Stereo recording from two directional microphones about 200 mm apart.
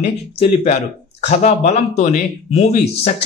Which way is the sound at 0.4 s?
25° left (ahead or behind).